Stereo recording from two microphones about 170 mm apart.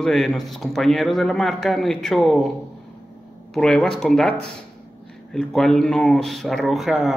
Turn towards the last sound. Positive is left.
turn(degrees=0)  # may be behind; listen again after turning